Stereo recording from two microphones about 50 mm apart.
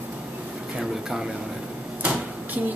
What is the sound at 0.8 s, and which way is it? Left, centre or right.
Speech, centre.